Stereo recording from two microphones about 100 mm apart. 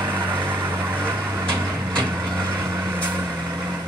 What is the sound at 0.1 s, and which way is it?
Vehicle, 20° right (ahead or behind).